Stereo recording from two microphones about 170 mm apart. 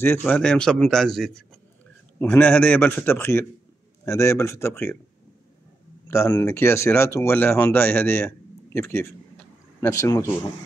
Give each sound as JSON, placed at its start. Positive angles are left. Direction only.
{"t": 0.0, "sound": "a man's voice", "side_deg": 10}
{"t": 6.0, "sound": "speech", "side_deg": 15}